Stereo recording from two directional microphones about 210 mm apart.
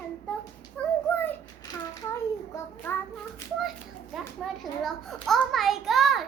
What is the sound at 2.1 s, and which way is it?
Child singing, 15° left (ahead or behind).